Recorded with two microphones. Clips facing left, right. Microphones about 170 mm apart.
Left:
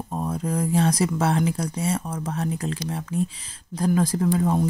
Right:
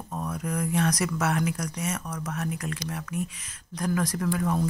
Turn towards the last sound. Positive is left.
turn(degrees=25)  # may be behind; listen again after turning